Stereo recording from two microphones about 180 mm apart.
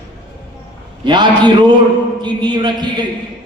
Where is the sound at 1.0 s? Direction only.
25° right (ahead or behind).